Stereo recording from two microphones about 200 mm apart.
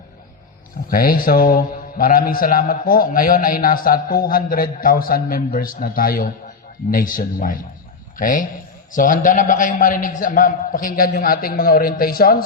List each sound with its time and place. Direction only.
0.9 s a man's voice: 45° left (ahead or behind)